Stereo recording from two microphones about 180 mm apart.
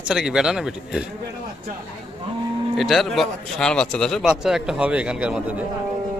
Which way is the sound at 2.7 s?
Centre (ahead or behind).